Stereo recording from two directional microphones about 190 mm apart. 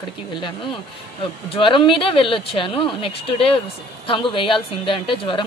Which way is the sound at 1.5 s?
25° left (ahead or behind).